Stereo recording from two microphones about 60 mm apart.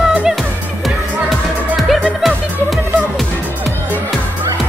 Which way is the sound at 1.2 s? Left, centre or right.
Centre.